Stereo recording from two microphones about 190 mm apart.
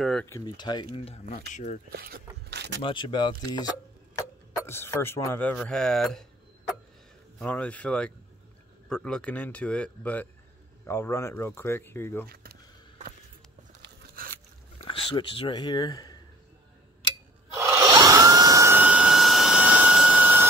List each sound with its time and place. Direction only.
0.0 s speech: 5° left (ahead or behind)
0.3 s speech: 20° left (ahead or behind)
1.5 s speech: 40° left (ahead or behind)
1.9 s a sound: 50° right (ahead or behind)
2.8 s speech: 25° left (ahead or behind); by 6.2 s 5° left (ahead or behind)
7.3 s speech: 5° left (ahead or behind)
14.1 s a sound: 50° right (ahead or behind)
14.8 s speech: 30° left (ahead or behind)
17.6 s a sound: 15° right (ahead or behind)